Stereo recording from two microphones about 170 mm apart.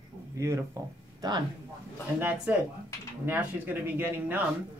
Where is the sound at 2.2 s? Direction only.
10° right (ahead or behind).